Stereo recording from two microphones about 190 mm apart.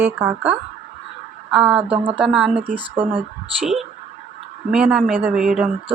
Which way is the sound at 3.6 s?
Centre (ahead or behind).